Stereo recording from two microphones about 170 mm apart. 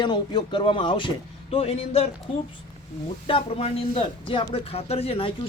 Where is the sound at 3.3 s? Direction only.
35° left (ahead or behind).